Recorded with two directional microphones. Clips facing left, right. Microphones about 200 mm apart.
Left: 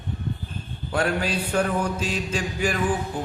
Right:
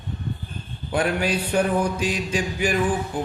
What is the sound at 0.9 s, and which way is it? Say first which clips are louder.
Mantra: right 2 dB; 15° right (ahead or behind).